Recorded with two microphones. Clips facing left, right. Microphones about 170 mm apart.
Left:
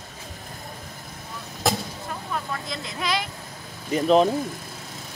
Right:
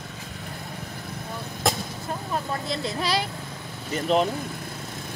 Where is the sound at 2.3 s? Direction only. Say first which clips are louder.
Right 3 dB; 35° right (ahead or behind).